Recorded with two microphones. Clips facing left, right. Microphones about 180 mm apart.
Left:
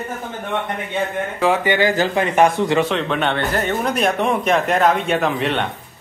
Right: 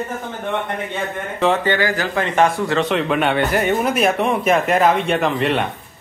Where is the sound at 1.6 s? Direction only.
20° left (ahead or behind).